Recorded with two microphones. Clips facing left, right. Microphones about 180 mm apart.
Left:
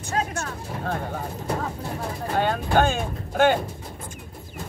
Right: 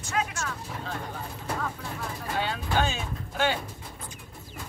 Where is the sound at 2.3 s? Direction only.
50° left (ahead or behind).